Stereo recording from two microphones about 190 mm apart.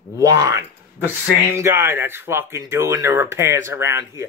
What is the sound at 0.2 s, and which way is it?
Speech, 15° right (ahead or behind).